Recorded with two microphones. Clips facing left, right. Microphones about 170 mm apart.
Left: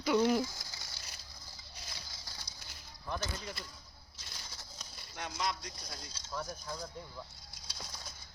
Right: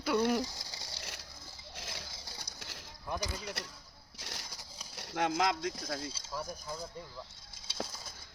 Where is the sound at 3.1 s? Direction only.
10° right (ahead or behind).